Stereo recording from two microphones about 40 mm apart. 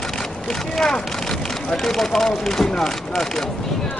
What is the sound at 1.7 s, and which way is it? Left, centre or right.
Speech, centre.